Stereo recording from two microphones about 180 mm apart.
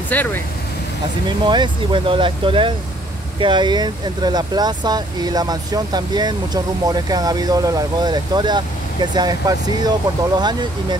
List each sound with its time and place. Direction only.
0.1 s speech: 10° left (ahead or behind)
1.4 s speech: 25° right (ahead or behind)